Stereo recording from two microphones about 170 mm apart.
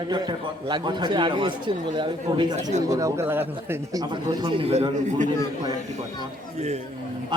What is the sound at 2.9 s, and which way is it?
Speech, 15° right (ahead or behind).